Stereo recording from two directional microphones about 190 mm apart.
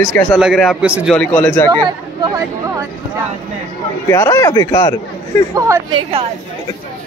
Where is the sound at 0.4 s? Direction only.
Centre (ahead or behind).